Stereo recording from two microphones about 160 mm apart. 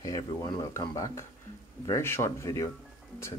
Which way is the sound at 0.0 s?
25° left (ahead or behind).